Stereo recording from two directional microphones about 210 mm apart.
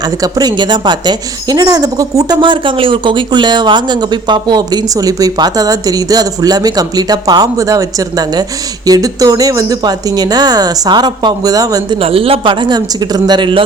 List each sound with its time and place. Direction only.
0.0 s a woman's voice: 20° right (ahead or behind)